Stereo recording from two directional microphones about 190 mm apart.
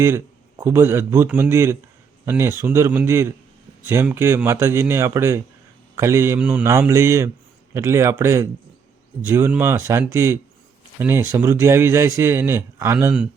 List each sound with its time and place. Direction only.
0.6 s a man's voice: 15° right (ahead or behind)